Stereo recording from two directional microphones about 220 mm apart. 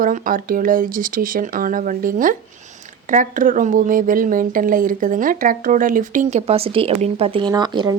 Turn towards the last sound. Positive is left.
turn(degrees=-20)  # may be behind; listen again after turning